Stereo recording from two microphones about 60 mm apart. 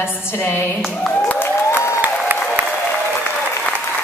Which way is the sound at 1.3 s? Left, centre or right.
Left.